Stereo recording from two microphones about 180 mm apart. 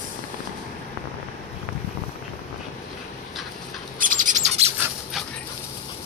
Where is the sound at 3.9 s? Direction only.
50° right (ahead or behind).